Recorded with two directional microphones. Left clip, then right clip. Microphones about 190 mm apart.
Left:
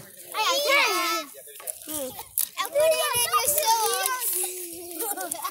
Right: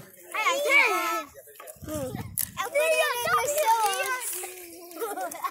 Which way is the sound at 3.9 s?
40° right (ahead or behind).